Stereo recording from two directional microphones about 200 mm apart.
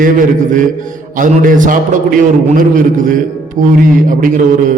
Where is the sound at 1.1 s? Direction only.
40° right (ahead or behind).